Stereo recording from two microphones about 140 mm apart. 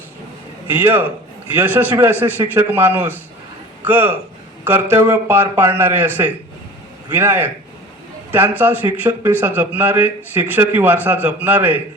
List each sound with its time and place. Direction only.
0.7 s a man's voice: 15° right (ahead or behind)